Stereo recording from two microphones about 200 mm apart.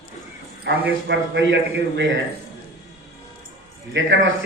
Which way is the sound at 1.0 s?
65° right (ahead or behind).